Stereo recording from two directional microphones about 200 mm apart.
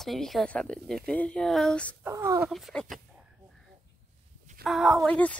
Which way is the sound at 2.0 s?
15° right (ahead or behind).